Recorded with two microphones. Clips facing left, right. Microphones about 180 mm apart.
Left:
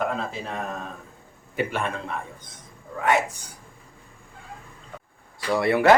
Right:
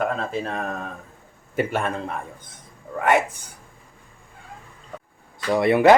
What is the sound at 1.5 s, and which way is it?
Speech, 45° right (ahead or behind).